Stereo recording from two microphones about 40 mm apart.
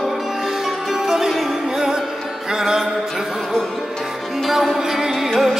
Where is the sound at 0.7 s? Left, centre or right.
Centre.